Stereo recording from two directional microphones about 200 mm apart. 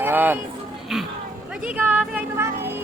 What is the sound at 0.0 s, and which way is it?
Speech, 10° right (ahead or behind).